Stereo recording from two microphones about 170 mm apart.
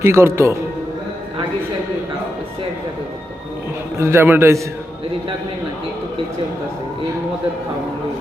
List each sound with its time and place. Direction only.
0.0 s a man's voice: 15° right (ahead or behind)
3.9 s a man's voice: 15° right (ahead or behind)